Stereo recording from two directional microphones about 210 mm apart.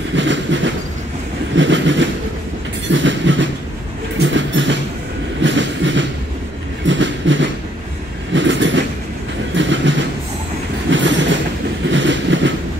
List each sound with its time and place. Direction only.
0.1 s train: 60° right (ahead or behind)
1.6 s train: 60° right (ahead or behind)
4.2 s a sound: 60° right (ahead or behind)
5.4 s train: 60° right (ahead or behind)